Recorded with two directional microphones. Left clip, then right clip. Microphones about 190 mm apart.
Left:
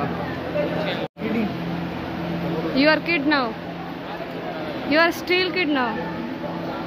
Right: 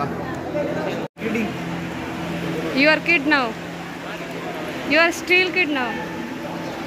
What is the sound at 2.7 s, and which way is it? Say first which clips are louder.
Speech: right 3 dB; 15° left (ahead or behind).